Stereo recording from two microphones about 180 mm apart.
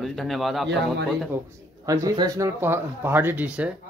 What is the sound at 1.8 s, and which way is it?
Speech, 20° right (ahead or behind).